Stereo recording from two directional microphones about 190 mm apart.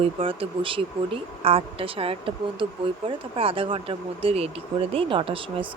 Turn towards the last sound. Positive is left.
turn(degrees=-25)  # may be behind; listen again after turning